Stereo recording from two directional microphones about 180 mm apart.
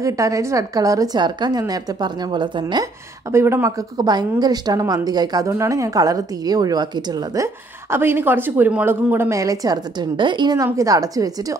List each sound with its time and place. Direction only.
0.0 s a woman's voice: 15° right (ahead or behind)